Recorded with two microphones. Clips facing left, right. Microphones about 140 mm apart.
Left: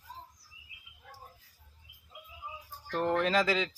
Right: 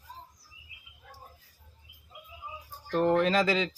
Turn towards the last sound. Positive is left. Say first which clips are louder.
# right 2 dB
turn(degrees=0)  # may be behind; listen again after turning